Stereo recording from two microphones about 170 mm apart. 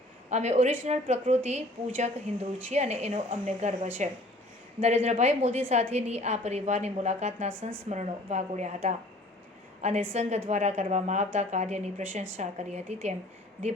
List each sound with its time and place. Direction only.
0.3 s a woman's voice: 40° right (ahead or behind)
10.1 s a woman's voice: 40° right (ahead or behind)